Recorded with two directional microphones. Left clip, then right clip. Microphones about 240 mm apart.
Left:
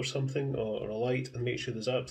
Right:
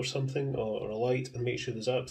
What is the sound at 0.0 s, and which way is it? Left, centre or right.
Speech, centre.